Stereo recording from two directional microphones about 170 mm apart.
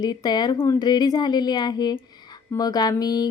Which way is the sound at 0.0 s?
25° left (ahead or behind).